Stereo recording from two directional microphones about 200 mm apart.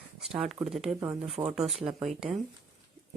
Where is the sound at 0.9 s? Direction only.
15° right (ahead or behind).